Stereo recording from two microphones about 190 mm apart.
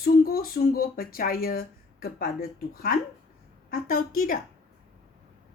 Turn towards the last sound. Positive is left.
turn(degrees=50)  # may be behind; listen again after turning